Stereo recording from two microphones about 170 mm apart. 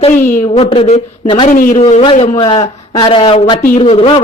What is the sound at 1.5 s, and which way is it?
Speech, 55° left (ahead or behind).